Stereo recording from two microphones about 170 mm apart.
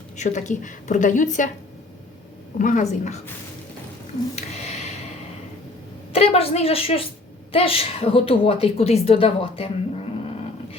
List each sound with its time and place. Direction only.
0.2 s a woman's voice: 45° left (ahead or behind)
2.6 s a woman's voice: 50° left (ahead or behind)
4.4 s a sound: 40° left (ahead or behind)
6.1 s a woman's voice: 35° left (ahead or behind)